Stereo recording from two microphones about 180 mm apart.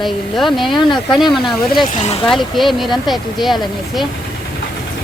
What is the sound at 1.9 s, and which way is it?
Speech, 40° left (ahead or behind).